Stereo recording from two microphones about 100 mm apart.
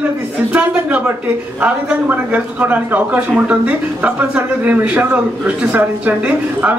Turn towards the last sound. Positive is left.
turn(degrees=-15)  # may be behind; listen again after turning